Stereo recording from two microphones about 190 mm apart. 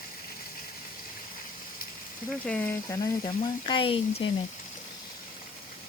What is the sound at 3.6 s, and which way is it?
Speech, 25° left (ahead or behind).